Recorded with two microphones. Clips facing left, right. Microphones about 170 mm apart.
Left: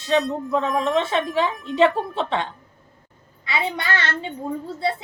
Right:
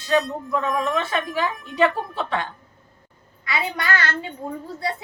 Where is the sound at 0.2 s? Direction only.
Centre (ahead or behind).